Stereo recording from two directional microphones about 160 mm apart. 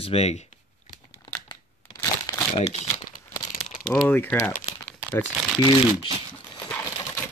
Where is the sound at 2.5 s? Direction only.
40° left (ahead or behind).